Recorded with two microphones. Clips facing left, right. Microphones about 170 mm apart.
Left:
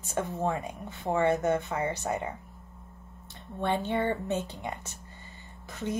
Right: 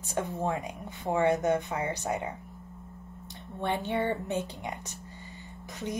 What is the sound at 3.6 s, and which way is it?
Speech, 15° right (ahead or behind).